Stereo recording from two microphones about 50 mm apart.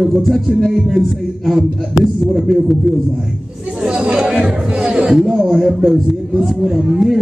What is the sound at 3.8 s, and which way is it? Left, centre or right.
Speech, centre.